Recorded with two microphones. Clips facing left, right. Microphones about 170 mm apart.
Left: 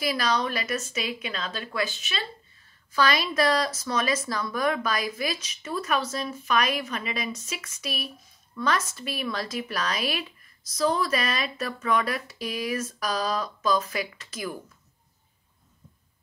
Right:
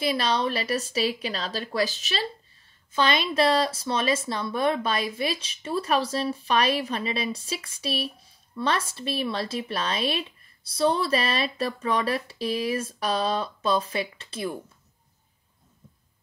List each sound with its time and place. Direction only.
0.0 s a woman's voice: 30° right (ahead or behind)
2.9 s speech: 25° right (ahead or behind)